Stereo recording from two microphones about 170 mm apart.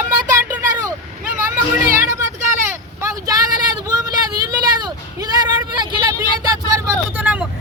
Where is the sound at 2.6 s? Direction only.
20° right (ahead or behind).